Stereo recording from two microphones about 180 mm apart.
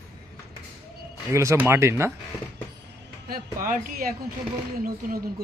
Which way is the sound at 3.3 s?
55° right (ahead or behind).